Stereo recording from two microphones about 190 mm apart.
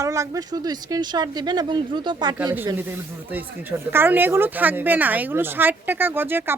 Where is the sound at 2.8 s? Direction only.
10° right (ahead or behind).